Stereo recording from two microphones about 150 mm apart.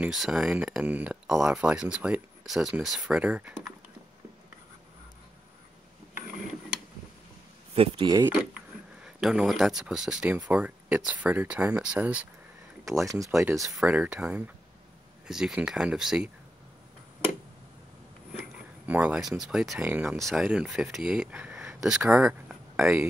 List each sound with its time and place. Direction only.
0.0 s speech: 5° right (ahead or behind)
7.7 s speech: 40° right (ahead or behind)
8.5 s speech: 5° right (ahead or behind)
13.1 s speech: 20° right (ahead or behind); by 16.3 s 5° right (ahead or behind)
18.9 s speech: 10° right (ahead or behind)
20.2 s speech: centre (ahead or behind)